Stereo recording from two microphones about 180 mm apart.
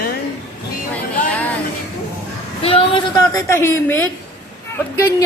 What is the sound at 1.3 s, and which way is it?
Music, 10° left (ahead or behind).